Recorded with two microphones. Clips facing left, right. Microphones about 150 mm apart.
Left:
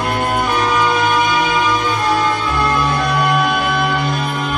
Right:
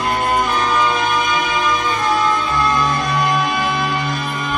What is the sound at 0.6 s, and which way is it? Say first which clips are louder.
Music: left 2 dB; 65° left (ahead or behind).